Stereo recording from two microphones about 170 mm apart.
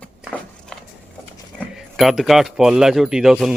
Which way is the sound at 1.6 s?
Centre (ahead or behind).